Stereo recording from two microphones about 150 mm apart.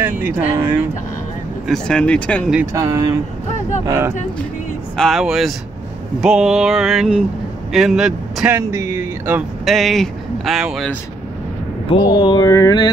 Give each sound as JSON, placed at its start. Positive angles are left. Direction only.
{"t": 0.0, "sound": "speech", "side_deg": -15}
{"t": 1.7, "sound": "speech", "side_deg": 5}
{"t": 2.7, "sound": "speech", "side_deg": -20}
{"t": 4.9, "sound": "speech", "side_deg": 0}
{"t": 8.5, "sound": "speech", "side_deg": -20}
{"t": 9.7, "sound": "speech", "side_deg": 0}
{"t": 11.9, "sound": "a sound", "side_deg": 30}